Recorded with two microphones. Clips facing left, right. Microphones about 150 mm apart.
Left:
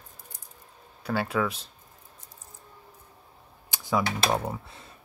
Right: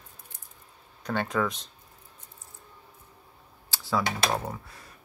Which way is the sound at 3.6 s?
15° left (ahead or behind).